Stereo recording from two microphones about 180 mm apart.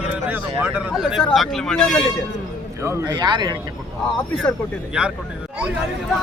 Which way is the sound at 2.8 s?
20° right (ahead or behind).